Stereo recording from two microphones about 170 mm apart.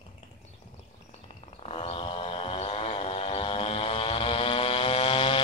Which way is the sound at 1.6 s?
35° left (ahead or behind).